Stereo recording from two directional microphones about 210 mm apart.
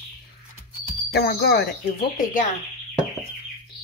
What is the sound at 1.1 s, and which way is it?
Speech, 50° left (ahead or behind).